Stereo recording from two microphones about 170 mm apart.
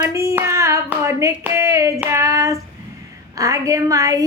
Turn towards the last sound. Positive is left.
turn(degrees=-20)  # may be behind; listen again after turning